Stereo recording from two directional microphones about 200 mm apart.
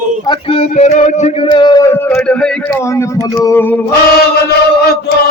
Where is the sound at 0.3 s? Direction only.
30° left (ahead or behind); by 2.5 s 5° left (ahead or behind).